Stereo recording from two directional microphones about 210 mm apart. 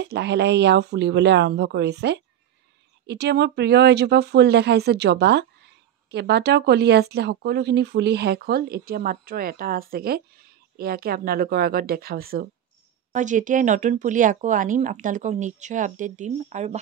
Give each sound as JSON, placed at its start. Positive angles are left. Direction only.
{"t": 0.0, "sound": "speech", "side_deg": -50}